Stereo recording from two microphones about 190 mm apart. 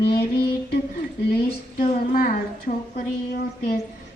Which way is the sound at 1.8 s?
45° left (ahead or behind).